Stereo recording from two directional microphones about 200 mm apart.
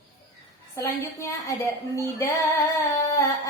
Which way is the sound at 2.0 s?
15° left (ahead or behind).